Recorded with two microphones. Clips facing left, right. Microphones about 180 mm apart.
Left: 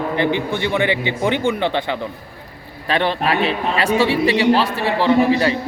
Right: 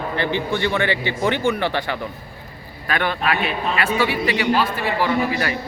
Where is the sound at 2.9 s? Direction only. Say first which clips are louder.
Left 3 dB; 30° left (ahead or behind).